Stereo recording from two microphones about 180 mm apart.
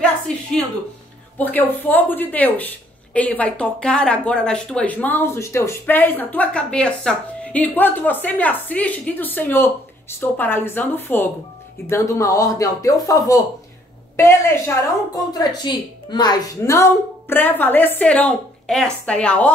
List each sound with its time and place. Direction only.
0.3 s a woman's voice: 5° left (ahead or behind)